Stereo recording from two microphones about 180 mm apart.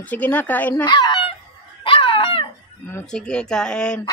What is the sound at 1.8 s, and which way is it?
Dog, 30° left (ahead or behind).